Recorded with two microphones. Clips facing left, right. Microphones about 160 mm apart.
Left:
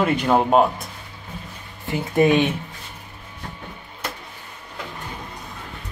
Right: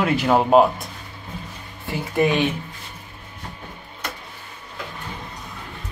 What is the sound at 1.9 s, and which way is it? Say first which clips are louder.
Speech: left 3 dB; 20° left (ahead or behind).